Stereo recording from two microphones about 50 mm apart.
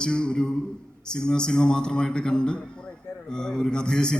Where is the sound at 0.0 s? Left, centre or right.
Centre.